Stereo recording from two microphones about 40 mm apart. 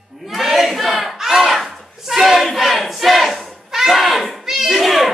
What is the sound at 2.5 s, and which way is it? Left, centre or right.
Battle cry, centre.